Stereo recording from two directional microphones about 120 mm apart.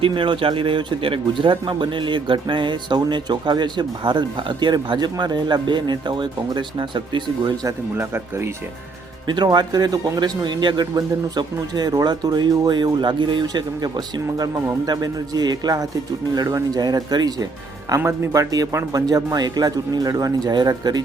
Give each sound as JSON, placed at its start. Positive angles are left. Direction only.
{"t": 0.0, "sound": "speech", "side_deg": -45}
{"t": 7.9, "sound": "speech", "side_deg": -20}
{"t": 9.2, "sound": "speech", "side_deg": -40}